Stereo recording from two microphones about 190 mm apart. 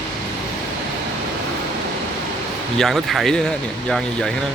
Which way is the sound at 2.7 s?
Centre (ahead or behind).